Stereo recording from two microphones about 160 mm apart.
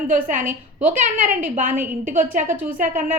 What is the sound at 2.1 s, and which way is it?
A woman's voice, 55° right (ahead or behind).